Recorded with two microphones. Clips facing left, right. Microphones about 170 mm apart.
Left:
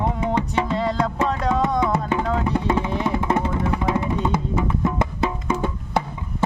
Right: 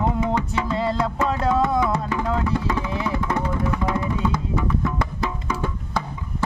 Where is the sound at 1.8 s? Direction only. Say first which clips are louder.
Left 1 dB; 25° left (ahead or behind).